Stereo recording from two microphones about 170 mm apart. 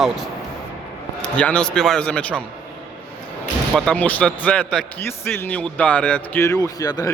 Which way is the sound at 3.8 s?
5° left (ahead or behind).